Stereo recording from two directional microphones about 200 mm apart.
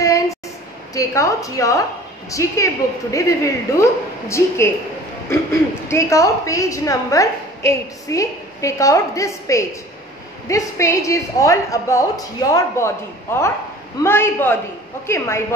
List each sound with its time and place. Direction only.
0.0 s a sound: 15° left (ahead or behind)
0.9 s a woman's voice: 15° left (ahead or behind)
5.3 s a woman's voice: 15° left (ahead or behind)